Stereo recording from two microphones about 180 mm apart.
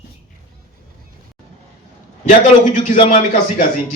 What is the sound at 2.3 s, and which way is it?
Speech, 45° left (ahead or behind).